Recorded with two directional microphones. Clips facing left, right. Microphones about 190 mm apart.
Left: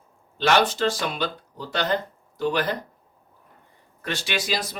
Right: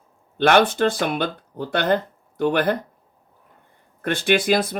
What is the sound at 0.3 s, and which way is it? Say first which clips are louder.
Speech: right 4 dB; 55° right (ahead or behind).